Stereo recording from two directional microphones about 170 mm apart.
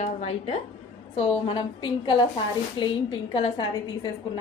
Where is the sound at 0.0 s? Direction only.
40° left (ahead or behind).